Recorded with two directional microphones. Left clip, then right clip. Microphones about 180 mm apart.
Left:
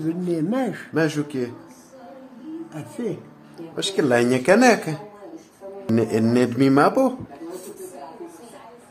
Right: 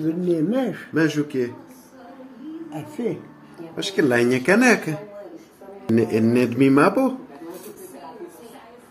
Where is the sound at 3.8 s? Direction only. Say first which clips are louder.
Even; 15° left (ahead or behind).